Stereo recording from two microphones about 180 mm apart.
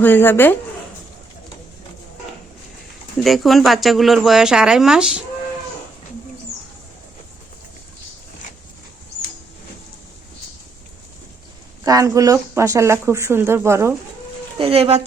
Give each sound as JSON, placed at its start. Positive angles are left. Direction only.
{"t": 0.0, "sound": "a woman's voice", "side_deg": 10}
{"t": 3.2, "sound": "speech", "side_deg": 0}
{"t": 11.9, "sound": "speech", "side_deg": -20}
{"t": 14.6, "sound": "speech", "side_deg": -35}